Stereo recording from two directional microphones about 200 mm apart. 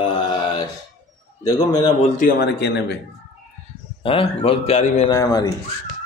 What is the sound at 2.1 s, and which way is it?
Speech, 40° left (ahead or behind).